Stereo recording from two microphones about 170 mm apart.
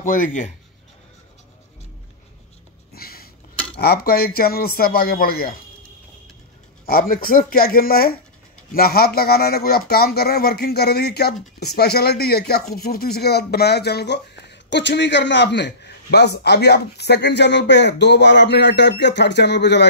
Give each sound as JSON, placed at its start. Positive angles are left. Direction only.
{"t": 0.0, "sound": "speech", "side_deg": 50}
{"t": 2.9, "sound": "a sound", "side_deg": 65}
{"t": 3.7, "sound": "a man's voice", "side_deg": 65}
{"t": 6.9, "sound": "a man's voice", "side_deg": 60}